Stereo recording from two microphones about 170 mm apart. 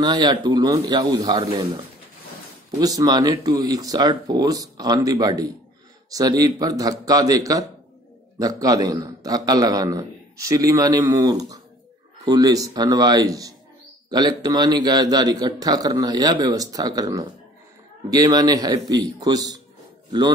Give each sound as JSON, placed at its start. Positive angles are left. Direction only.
{"t": 0.0, "sound": "a man's voice", "side_deg": -25}
{"t": 2.8, "sound": "a man's voice", "side_deg": -20}